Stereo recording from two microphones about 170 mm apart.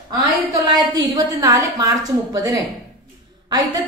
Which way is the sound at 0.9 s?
20° right (ahead or behind).